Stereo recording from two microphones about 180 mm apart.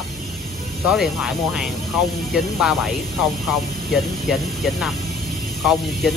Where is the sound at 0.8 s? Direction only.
5° right (ahead or behind).